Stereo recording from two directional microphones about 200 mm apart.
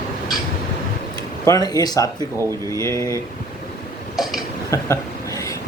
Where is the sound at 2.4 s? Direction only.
15° right (ahead or behind).